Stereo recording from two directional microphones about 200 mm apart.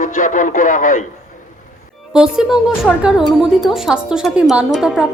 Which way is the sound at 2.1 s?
5° right (ahead or behind).